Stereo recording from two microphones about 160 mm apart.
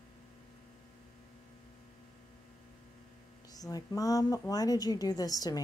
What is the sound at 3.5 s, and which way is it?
A woman's voice, 25° left (ahead or behind).